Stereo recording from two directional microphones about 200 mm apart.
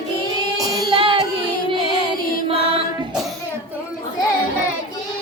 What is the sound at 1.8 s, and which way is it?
Music, 25° left (ahead or behind).